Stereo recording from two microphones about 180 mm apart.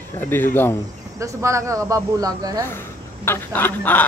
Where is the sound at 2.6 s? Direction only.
15° left (ahead or behind).